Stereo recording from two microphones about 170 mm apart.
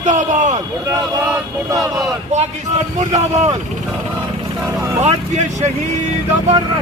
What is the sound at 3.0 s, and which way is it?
Speech, 45° right (ahead or behind).